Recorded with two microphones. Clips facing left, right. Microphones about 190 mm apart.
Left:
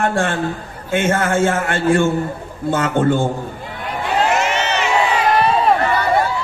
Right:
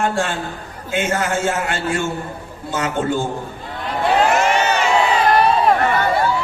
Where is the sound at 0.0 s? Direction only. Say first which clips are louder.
Left 2 dB; 55° left (ahead or behind).